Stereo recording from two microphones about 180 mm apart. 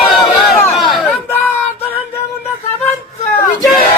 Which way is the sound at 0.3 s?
Centre (ahead or behind).